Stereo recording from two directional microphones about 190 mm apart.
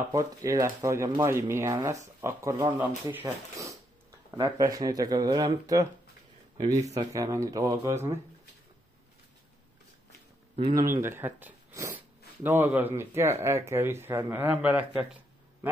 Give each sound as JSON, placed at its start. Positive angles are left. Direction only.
{"t": 0.1, "sound": "speech", "side_deg": -20}
{"t": 10.7, "sound": "speech", "side_deg": -15}